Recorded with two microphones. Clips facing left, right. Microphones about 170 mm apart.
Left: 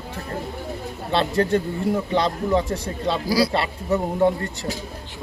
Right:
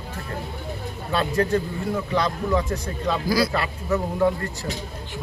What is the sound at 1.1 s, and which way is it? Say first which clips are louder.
Speech: left 2 dB; 30° left (ahead or behind).